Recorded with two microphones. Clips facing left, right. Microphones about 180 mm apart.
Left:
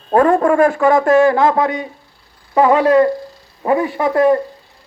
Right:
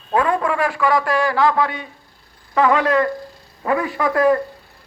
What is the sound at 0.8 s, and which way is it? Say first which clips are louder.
A man's voice: left 7 dB; 25° left (ahead or behind).